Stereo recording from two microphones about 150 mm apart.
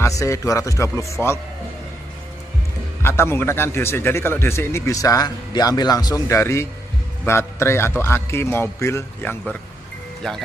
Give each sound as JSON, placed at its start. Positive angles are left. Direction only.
{"t": 0.0, "sound": "speech", "side_deg": 20}
{"t": 3.0, "sound": "a man's voice", "side_deg": 15}